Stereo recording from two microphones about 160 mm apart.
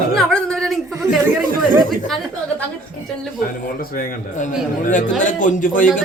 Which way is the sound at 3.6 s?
60° left (ahead or behind).